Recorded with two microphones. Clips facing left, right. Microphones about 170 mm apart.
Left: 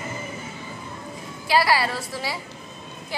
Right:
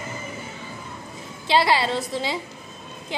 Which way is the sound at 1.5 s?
25° right (ahead or behind).